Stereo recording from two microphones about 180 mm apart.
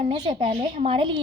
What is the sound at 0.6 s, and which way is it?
Speech, 45° right (ahead or behind).